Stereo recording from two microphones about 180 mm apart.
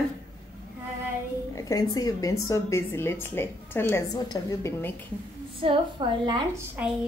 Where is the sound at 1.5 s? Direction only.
20° left (ahead or behind).